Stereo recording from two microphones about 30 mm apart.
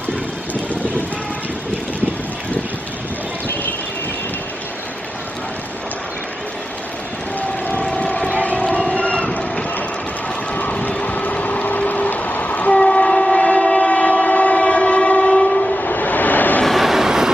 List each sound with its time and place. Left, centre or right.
8.0 s vehicle: left
8.5 s crowd: left
11.1 s train: left
15.5 s train: left
15.8 s vehicle: left
16.7 s vehicle: centre